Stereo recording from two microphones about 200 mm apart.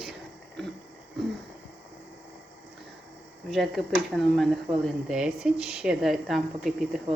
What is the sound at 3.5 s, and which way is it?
Speech, centre (ahead or behind).